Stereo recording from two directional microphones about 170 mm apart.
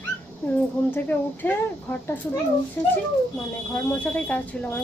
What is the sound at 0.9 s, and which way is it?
A woman's voice, 10° left (ahead or behind).